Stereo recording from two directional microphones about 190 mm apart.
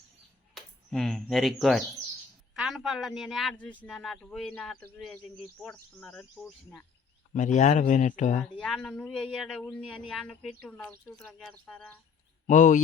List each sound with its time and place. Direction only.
0.5 s a man's voice: centre (ahead or behind)
7.3 s speech: 40° left (ahead or behind)
8.5 s a man's voice: 5° left (ahead or behind)
12.5 s speech: 40° left (ahead or behind)